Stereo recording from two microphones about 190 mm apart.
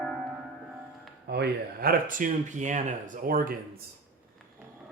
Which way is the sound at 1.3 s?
55° right (ahead or behind).